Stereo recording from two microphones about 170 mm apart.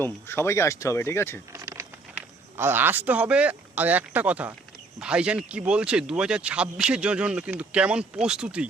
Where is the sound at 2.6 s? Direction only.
15° right (ahead or behind).